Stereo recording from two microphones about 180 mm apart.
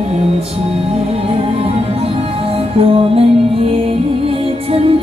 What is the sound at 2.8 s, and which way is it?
Music, 30° right (ahead or behind).